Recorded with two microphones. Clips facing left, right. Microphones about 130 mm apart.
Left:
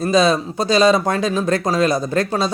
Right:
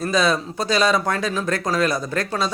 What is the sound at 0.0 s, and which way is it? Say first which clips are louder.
Speech: left 5 dB; 20° left (ahead or behind).